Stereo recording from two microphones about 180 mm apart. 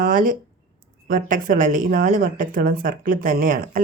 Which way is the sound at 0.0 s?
50° right (ahead or behind).